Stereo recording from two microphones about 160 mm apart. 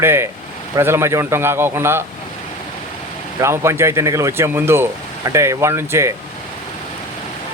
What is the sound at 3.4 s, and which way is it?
Speech, 15° right (ahead or behind).